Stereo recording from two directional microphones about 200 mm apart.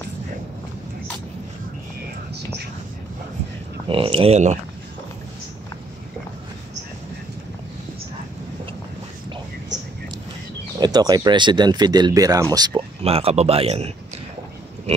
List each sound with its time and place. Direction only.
3.9 s speech: 25° right (ahead or behind)
10.8 s speech: 20° right (ahead or behind)